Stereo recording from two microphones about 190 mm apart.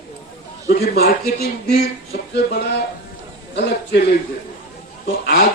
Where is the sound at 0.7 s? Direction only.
55° left (ahead or behind).